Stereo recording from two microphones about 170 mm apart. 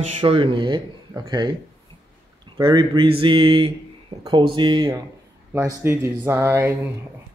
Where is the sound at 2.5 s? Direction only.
20° right (ahead or behind).